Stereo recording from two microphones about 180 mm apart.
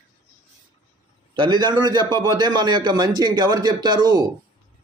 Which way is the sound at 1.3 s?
25° right (ahead or behind).